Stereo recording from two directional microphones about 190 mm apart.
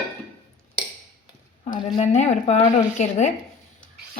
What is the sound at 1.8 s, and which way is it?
Speech, 35° left (ahead or behind).